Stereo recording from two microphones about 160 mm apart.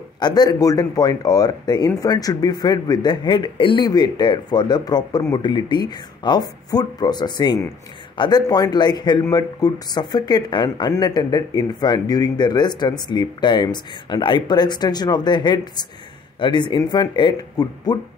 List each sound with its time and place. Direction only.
0.2 s speech: 25° left (ahead or behind)